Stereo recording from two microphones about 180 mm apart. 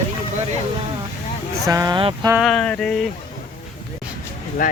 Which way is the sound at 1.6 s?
20° right (ahead or behind).